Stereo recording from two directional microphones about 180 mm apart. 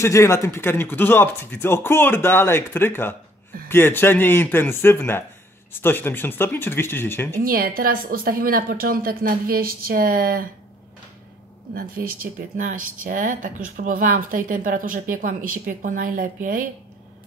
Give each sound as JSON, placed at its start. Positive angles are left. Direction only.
{"t": 0.0, "sound": "speech", "side_deg": 15}
{"t": 7.4, "sound": "a woman's voice", "side_deg": -55}
{"t": 11.7, "sound": "speech", "side_deg": -55}